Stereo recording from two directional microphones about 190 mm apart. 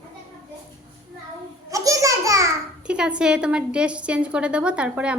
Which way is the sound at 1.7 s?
15° right (ahead or behind).